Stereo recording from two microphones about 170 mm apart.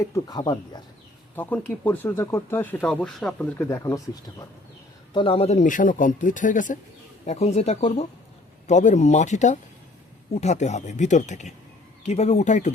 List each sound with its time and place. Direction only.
0.0 s speech: 20° left (ahead or behind)
1.4 s speech: 10° left (ahead or behind)
5.1 s speech: 30° left (ahead or behind); by 6.7 s 50° left (ahead or behind)
7.3 s speech: 40° left (ahead or behind)